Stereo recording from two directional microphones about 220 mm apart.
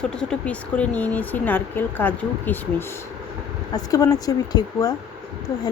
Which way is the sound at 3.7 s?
15° left (ahead or behind).